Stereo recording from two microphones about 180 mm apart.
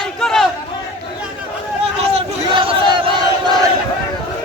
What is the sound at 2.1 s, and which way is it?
Battle cry, 30° right (ahead or behind).